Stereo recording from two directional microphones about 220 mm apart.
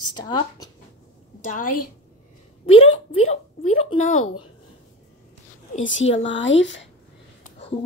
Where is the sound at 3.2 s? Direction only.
30° left (ahead or behind).